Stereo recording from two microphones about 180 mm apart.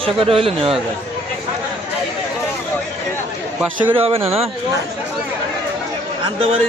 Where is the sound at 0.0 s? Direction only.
30° right (ahead or behind).